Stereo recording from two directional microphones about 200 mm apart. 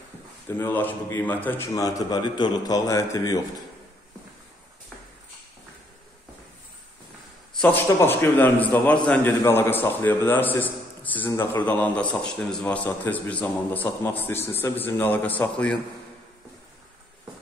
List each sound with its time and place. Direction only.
0.5 s a man's voice: 10° left (ahead or behind)
7.6 s a man's voice: 10° left (ahead or behind)